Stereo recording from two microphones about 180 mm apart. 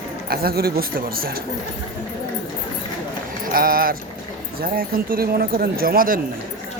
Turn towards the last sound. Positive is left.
turn(degrees=-50)  # may be behind; listen again after turning